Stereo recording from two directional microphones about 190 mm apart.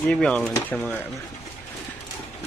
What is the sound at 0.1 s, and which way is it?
Speech, 5° left (ahead or behind).